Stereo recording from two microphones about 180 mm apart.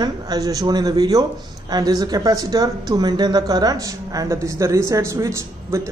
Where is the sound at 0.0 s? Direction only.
20° right (ahead or behind).